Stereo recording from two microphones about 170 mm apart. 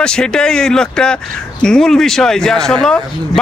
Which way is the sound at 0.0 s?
5° left (ahead or behind).